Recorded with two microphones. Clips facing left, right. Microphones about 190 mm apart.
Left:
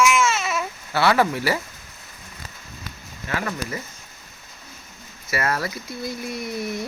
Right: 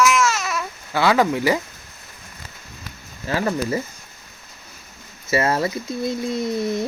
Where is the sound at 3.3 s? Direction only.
30° right (ahead or behind).